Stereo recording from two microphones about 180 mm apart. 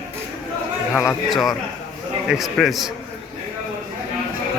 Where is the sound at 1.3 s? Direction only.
Centre (ahead or behind).